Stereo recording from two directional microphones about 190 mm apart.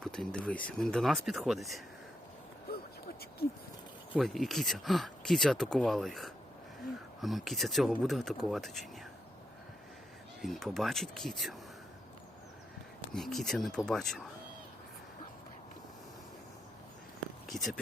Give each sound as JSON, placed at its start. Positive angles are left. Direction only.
{"t": 0.0, "sound": "speech", "side_deg": 5}
{"t": 2.6, "sound": "a sound", "side_deg": 55}
{"t": 4.1, "sound": "speech", "side_deg": 0}
{"t": 10.4, "sound": "speech", "side_deg": 0}
{"t": 13.1, "sound": "speech", "side_deg": 0}
{"t": 17.5, "sound": "speech", "side_deg": 0}